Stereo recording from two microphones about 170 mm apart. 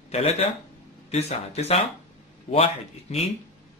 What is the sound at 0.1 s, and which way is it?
A man's voice, 40° left (ahead or behind).